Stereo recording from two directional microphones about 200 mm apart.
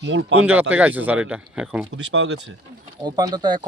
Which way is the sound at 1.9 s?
60° right (ahead or behind).